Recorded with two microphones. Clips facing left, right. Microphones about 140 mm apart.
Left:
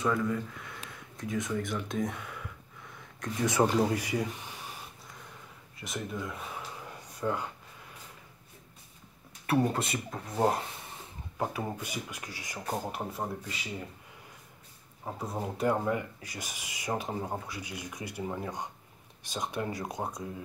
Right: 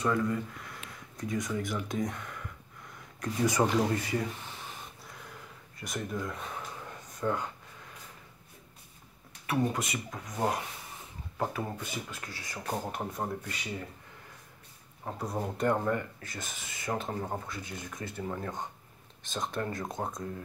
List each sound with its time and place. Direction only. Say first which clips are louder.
0.0 s speech: even; centre (ahead or behind)
3.9 s speech: even; 15° left (ahead or behind)
5.8 s speech: right 1 dB; centre (ahead or behind)
9.5 s speech: left 2 dB; 30° left (ahead or behind)
11.3 s speech: even; 15° left (ahead or behind)
15.0 s speech: right 1 dB; 5° left (ahead or behind)